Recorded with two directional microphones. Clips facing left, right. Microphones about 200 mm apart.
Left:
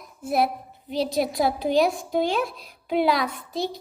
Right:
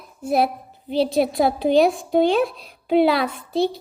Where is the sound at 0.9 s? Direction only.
30° right (ahead or behind).